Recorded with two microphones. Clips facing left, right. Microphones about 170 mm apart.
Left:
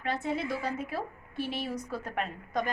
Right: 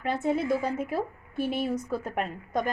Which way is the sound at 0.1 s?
50° right (ahead or behind).